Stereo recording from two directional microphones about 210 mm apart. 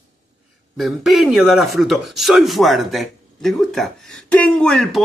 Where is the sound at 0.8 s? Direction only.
Centre (ahead or behind).